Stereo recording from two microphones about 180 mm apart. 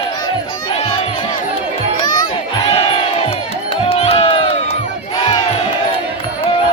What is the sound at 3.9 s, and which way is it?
Crowd, 35° left (ahead or behind).